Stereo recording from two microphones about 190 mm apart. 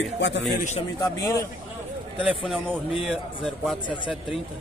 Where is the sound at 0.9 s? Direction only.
20° left (ahead or behind).